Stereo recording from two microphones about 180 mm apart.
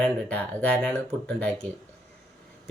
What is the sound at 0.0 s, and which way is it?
Speech, 5° left (ahead or behind).